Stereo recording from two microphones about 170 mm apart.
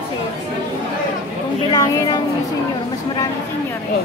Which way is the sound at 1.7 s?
25° left (ahead or behind).